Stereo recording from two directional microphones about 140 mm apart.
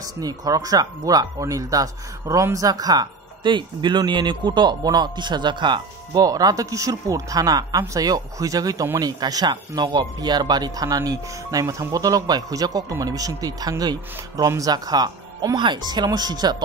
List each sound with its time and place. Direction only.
0.2 s speech: 25° right (ahead or behind)
9.2 s speech: 30° right (ahead or behind)